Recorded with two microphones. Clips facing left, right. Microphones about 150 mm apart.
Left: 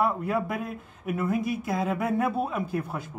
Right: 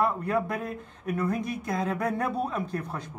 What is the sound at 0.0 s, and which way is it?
Speech, 5° left (ahead or behind).